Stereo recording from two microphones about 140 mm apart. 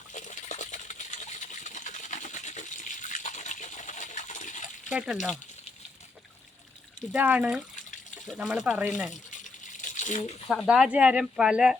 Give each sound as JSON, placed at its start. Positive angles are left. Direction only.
{"t": 0.1, "sound": "coin", "side_deg": 60}
{"t": 4.9, "sound": "speech", "side_deg": -10}
{"t": 7.1, "sound": "speech", "side_deg": -10}
{"t": 9.7, "sound": "coin", "side_deg": 65}
{"t": 10.5, "sound": "speech", "side_deg": 0}